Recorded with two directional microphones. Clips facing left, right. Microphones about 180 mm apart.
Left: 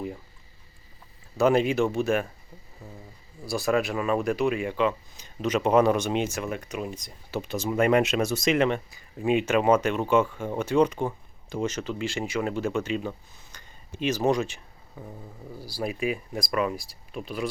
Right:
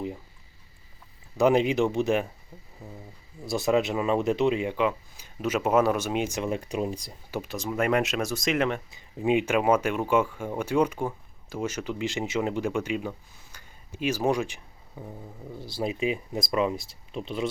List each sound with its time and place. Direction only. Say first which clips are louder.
1.4 s speech: even; 15° right (ahead or behind)
3.4 s speech: right 1 dB; 20° right (ahead or behind)
6.4 s speech: right 3 dB; 30° right (ahead or behind)
7.3 s speech: left 1 dB; 10° right (ahead or behind)
7.5 s speech: left 4 dB; centre (ahead or behind)
8.9 s speech: even; 20° right (ahead or behind)